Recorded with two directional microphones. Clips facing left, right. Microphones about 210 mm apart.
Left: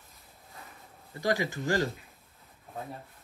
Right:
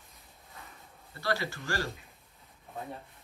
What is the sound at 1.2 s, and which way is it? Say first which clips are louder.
Speech: left 4 dB; 15° left (ahead or behind).